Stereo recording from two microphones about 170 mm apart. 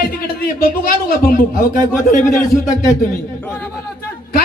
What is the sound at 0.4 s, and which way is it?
A man's voice, 60° left (ahead or behind).